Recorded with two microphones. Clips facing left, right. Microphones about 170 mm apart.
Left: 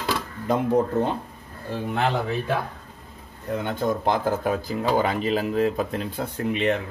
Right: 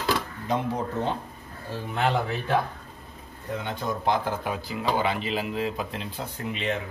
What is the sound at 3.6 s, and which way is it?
Speech, 50° left (ahead or behind).